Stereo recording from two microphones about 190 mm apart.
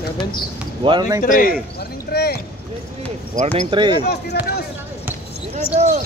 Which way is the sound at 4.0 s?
60° left (ahead or behind).